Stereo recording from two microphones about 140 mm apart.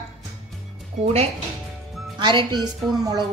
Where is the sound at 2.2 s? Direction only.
35° right (ahead or behind).